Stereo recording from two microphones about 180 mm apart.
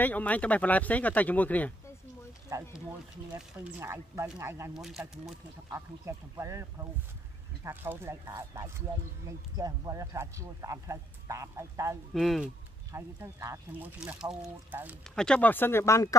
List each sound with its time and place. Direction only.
0.0 s speech: 10° left (ahead or behind)
2.5 s a man's voice: 15° right (ahead or behind)
4.7 s speech: centre (ahead or behind)
5.7 s a man's voice: 15° right (ahead or behind)
12.1 s speech: centre (ahead or behind)
12.9 s a man's voice: 15° right (ahead or behind)
15.1 s speech: 5° left (ahead or behind)